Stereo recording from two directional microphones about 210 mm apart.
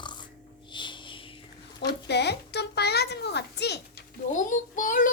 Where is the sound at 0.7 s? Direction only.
20° left (ahead or behind).